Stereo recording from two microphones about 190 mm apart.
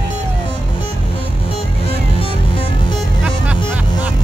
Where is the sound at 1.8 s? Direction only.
30° left (ahead or behind).